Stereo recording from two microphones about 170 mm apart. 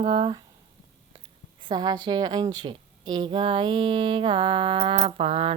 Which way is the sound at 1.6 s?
25° right (ahead or behind).